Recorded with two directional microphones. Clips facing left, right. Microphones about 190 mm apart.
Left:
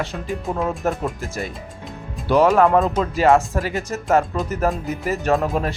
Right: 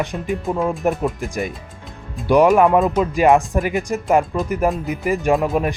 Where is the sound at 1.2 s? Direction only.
15° right (ahead or behind).